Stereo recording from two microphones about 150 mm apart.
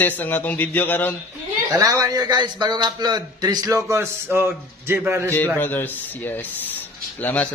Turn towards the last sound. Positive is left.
turn(degrees=10)  # may be behind; listen again after turning